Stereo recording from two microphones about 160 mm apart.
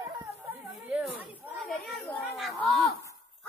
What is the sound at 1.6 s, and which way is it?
Children playing, centre (ahead or behind).